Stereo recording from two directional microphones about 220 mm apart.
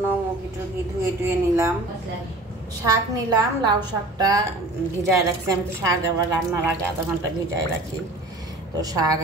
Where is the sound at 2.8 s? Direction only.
20° right (ahead or behind).